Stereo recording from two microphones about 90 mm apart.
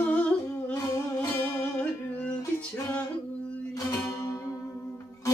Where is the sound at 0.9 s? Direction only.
30° left (ahead or behind).